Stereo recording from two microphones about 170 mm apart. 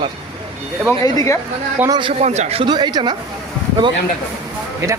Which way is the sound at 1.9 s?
30° right (ahead or behind).